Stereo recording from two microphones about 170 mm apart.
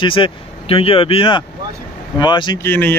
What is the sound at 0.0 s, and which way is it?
Speech, 30° left (ahead or behind).